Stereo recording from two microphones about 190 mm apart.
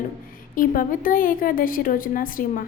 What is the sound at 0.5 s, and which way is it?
A woman's voice, 45° left (ahead or behind).